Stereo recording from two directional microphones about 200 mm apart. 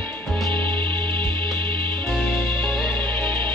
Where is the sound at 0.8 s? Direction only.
25° right (ahead or behind).